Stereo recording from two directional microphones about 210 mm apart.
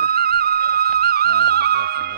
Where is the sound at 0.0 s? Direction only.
50° right (ahead or behind).